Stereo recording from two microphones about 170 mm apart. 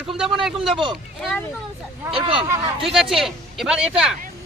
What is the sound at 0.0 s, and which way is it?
Speech, 5° right (ahead or behind).